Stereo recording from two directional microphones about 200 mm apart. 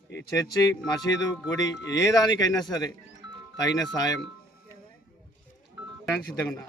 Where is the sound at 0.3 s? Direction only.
20° left (ahead or behind).